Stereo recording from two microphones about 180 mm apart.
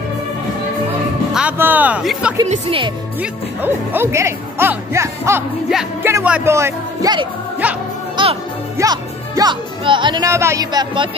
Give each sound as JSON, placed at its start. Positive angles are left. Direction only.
{"t": 1.3, "sound": "speech", "side_deg": -10}
{"t": 2.4, "sound": "speech", "side_deg": -40}
{"t": 3.2, "sound": "speech", "side_deg": -10}
{"t": 7.6, "sound": "speech", "side_deg": -10}
{"t": 8.2, "sound": "music", "side_deg": -25}
{"t": 8.7, "sound": "speech", "side_deg": -20}